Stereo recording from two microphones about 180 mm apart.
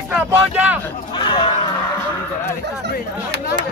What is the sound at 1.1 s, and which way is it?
Speech, 25° left (ahead or behind).